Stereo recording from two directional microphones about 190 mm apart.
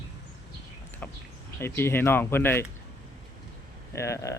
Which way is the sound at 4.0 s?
15° left (ahead or behind).